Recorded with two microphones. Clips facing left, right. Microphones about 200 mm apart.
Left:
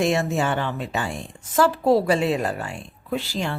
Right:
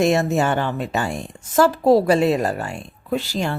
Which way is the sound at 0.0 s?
40° right (ahead or behind).